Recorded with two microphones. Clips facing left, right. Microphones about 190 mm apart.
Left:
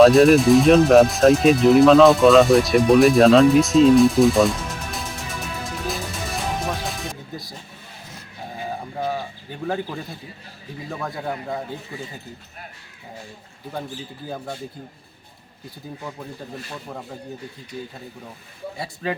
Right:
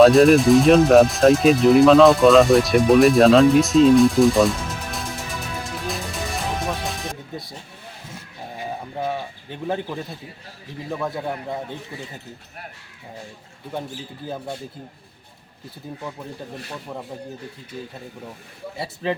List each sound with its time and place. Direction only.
0.0 s speech: centre (ahead or behind)
5.9 s music: centre (ahead or behind)
9.0 s speech: centre (ahead or behind)